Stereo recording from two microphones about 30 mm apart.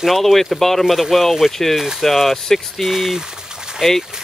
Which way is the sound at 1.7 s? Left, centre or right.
Centre.